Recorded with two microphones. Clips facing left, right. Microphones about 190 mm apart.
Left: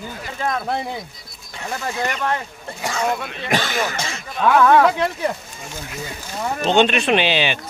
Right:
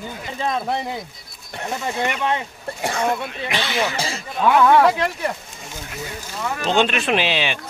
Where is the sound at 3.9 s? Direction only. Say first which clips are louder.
Right 2 dB; 35° right (ahead or behind).